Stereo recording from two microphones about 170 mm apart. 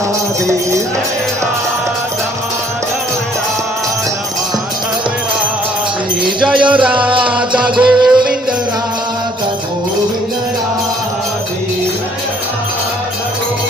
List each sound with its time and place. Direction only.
6.2 s music: 5° right (ahead or behind)